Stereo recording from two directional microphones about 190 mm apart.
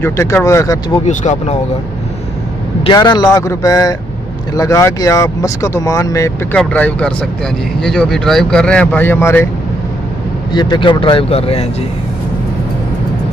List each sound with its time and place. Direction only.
0.0 s speech: 15° left (ahead or behind)
1.0 s speech: 40° left (ahead or behind)
2.8 s speech: 20° left (ahead or behind)
10.5 s speech: 25° left (ahead or behind)